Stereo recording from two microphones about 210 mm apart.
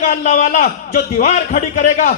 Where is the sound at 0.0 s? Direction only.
35° left (ahead or behind).